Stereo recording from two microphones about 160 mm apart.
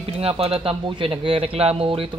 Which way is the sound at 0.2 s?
35° right (ahead or behind).